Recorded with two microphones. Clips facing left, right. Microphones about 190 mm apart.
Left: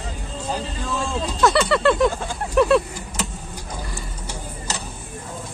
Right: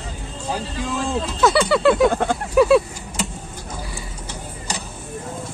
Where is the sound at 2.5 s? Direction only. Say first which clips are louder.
Right 2 dB; centre (ahead or behind).